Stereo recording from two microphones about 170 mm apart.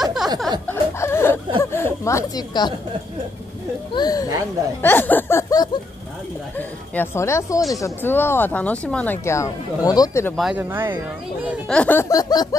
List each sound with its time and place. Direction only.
0.0 s a sound: centre (ahead or behind)
0.7 s chuckle: 15° left (ahead or behind)
1.6 s speech: 15° left (ahead or behind)
3.9 s speech: 25° left (ahead or behind)
4.8 s speech: 10° left (ahead or behind)
6.5 s speech: 10° left (ahead or behind)
10.3 s speech: centre (ahead or behind)
10.6 s speech: 10° right (ahead or behind)
11.6 s speech: 5° left (ahead or behind); by 12.4 s 20° left (ahead or behind)